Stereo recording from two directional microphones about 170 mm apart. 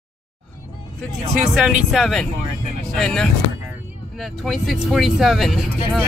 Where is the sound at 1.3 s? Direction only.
Centre (ahead or behind).